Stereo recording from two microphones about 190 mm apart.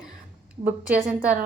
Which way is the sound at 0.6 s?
30° right (ahead or behind).